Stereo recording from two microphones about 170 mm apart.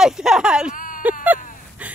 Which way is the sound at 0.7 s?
55° left (ahead or behind).